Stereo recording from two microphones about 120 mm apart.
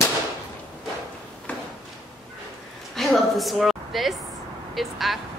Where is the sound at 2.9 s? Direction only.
Centre (ahead or behind).